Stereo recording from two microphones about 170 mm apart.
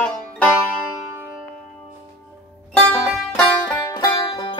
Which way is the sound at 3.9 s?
30° left (ahead or behind).